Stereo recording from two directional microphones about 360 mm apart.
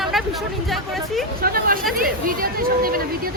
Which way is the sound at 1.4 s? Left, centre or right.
Right.